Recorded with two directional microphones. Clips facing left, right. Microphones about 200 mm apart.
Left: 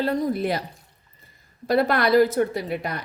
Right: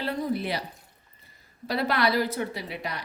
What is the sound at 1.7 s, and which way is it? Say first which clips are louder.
A woman's voice: left 6 dB; 50° left (ahead or behind).